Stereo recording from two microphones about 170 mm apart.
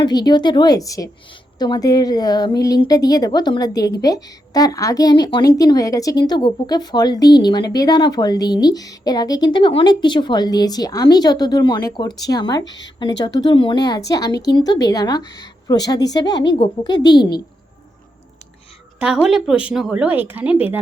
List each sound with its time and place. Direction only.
0.0 s a woman's voice: 25° left (ahead or behind)
18.9 s a woman's voice: 5° right (ahead or behind)